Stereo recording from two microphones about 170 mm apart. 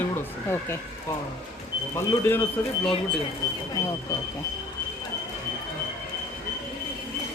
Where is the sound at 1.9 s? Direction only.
15° left (ahead or behind).